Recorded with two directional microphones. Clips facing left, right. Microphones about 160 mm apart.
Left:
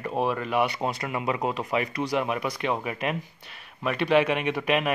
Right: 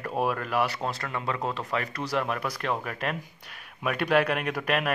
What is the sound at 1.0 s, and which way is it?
Speech, 10° left (ahead or behind).